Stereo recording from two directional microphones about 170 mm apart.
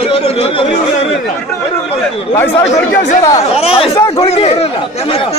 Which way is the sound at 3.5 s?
35° left (ahead or behind).